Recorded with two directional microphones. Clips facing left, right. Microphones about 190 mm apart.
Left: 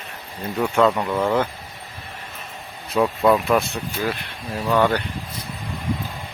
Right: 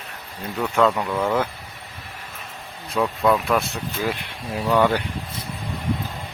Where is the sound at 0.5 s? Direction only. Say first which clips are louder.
Left 1 dB; 10° left (ahead or behind).